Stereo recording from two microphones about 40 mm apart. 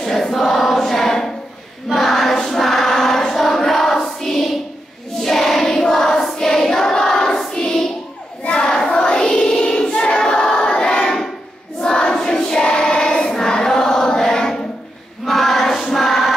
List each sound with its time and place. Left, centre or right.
0.0 s choir: centre
8.5 s child singing: left
8.9 s choir: left
11.8 s a sound: left
12.2 s choir: centre
15.2 s choir: centre